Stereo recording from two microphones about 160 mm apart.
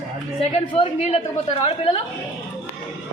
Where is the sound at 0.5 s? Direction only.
35° left (ahead or behind).